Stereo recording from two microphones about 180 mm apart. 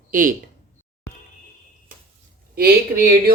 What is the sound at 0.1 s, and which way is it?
Speech, 50° right (ahead or behind).